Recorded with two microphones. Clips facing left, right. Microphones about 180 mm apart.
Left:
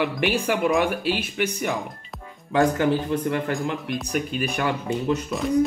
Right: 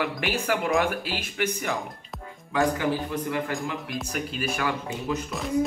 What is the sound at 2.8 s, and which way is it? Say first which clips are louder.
Speech: left 5 dB; 55° left (ahead or behind).